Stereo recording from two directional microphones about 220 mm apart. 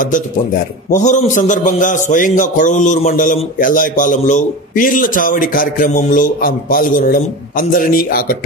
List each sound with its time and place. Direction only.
0.9 s a man's voice: 30° left (ahead or behind)